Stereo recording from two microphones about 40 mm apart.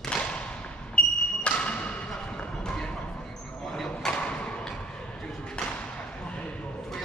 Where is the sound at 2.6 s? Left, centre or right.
Centre.